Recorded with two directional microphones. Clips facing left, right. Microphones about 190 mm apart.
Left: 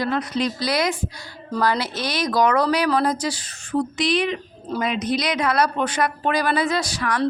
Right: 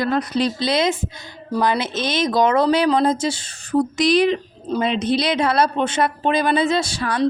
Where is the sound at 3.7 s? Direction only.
40° right (ahead or behind).